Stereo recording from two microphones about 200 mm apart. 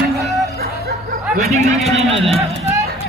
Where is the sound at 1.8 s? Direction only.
30° right (ahead or behind).